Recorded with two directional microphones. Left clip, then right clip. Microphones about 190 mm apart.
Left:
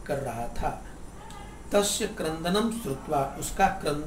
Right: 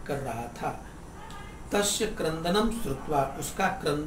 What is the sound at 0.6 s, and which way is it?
Speech, 15° left (ahead or behind).